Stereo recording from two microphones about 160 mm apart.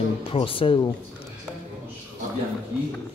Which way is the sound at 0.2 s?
35° left (ahead or behind).